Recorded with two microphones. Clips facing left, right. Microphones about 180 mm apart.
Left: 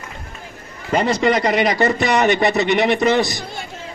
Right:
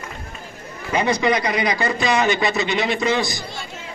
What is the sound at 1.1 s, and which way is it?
Speech, 75° left (ahead or behind).